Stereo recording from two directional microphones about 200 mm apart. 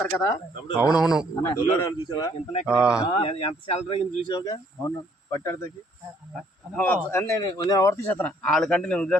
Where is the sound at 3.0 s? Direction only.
25° left (ahead or behind).